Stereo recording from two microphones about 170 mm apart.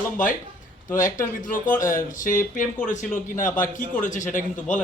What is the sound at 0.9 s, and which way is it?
Speech, 55° left (ahead or behind).